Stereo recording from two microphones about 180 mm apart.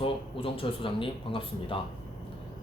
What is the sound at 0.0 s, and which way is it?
Speech, 30° left (ahead or behind).